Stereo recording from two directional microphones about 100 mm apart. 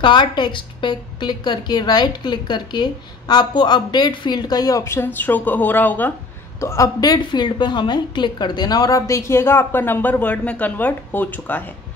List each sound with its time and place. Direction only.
0.0 s a woman's voice: 50° left (ahead or behind); by 6.1 s 15° left (ahead or behind)
6.6 s a woman's voice: 30° left (ahead or behind)
7.0 s a woman's voice: 45° left (ahead or behind); by 11.6 s 15° left (ahead or behind)